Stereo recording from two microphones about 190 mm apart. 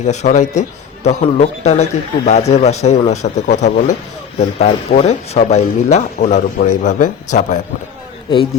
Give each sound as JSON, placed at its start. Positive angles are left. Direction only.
{"t": 0.0, "sound": "a man's voice", "side_deg": 35}